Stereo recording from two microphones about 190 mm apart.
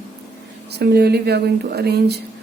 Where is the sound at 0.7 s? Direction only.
60° right (ahead or behind).